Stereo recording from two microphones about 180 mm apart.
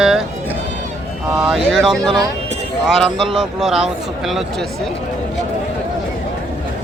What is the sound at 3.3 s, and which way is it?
Speech, 5° right (ahead or behind).